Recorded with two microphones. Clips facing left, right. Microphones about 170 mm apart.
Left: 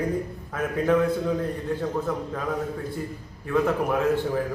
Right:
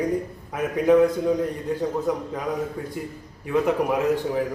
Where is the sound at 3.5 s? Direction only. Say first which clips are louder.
Right 2 dB; 15° right (ahead or behind).